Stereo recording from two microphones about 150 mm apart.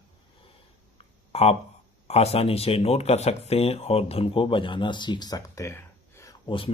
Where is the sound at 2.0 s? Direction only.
45° left (ahead or behind); by 6.5 s 20° left (ahead or behind).